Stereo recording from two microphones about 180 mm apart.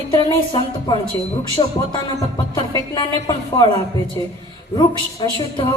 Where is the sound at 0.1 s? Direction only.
25° left (ahead or behind).